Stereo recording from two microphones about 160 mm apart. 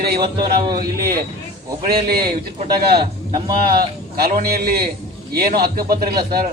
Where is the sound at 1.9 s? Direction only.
75° right (ahead or behind).